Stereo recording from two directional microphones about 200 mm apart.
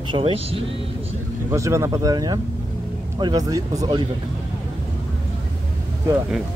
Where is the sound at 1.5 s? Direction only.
15° right (ahead or behind).